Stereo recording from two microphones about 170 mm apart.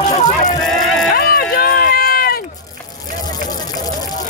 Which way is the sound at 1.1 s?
60° left (ahead or behind).